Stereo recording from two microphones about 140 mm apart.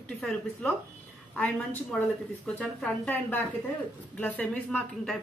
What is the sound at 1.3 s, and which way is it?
A woman's voice, 10° left (ahead or behind).